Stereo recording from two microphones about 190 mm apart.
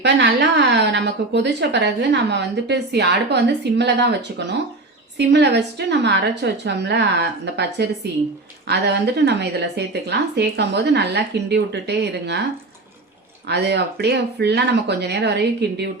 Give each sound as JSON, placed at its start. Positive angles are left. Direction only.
{"t": 0.0, "sound": "a woman's voice", "side_deg": -65}
{"t": 13.5, "sound": "a woman's voice", "side_deg": -60}